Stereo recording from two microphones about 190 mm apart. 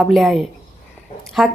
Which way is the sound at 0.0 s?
Centre (ahead or behind).